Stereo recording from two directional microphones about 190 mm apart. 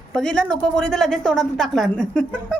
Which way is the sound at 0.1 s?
5° left (ahead or behind).